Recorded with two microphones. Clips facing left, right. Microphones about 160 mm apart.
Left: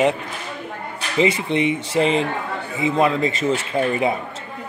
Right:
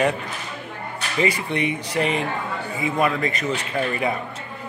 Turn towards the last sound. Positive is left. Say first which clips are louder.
# left 4 dB
turn(degrees=25)  # may be behind; listen again after turning